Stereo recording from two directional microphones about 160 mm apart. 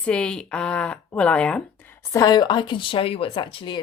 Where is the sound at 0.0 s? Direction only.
5° left (ahead or behind).